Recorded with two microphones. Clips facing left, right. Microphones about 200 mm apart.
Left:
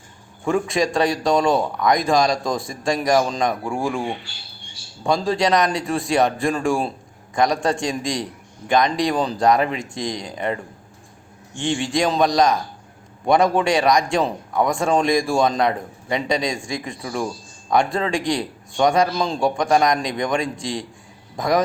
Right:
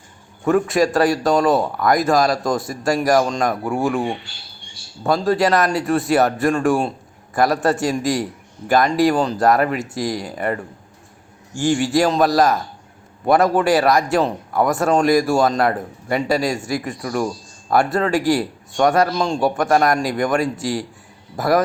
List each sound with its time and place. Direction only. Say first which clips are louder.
0.4 s a man's voice: right 4 dB; centre (ahead or behind)
11.5 s a man's voice: right 5 dB; 25° left (ahead or behind)
11.9 s a man's voice: even; 5° right (ahead or behind)